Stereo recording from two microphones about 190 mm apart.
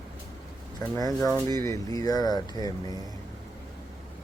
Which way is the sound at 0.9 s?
15° left (ahead or behind).